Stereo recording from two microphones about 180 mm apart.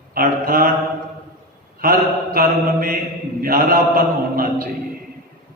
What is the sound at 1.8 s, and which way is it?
A man's voice, 55° right (ahead or behind).